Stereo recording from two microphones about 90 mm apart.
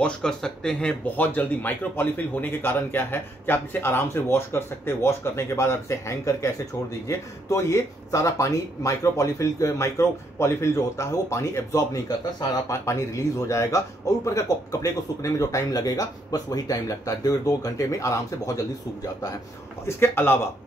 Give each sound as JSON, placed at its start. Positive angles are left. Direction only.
{"t": 0.0, "sound": "speech", "side_deg": 5}
{"t": 1.1, "sound": "a man's voice", "side_deg": 20}
{"t": 20.0, "sound": "a man's voice", "side_deg": 25}